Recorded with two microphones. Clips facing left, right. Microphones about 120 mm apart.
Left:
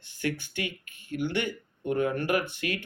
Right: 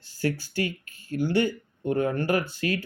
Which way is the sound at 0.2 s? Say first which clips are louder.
Right 4 dB; 35° right (ahead or behind).